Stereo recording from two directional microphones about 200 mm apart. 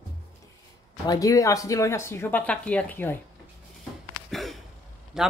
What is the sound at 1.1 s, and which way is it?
Speech, 15° left (ahead or behind).